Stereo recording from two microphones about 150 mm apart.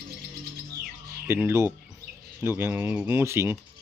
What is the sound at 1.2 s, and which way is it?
Speech, 15° right (ahead or behind).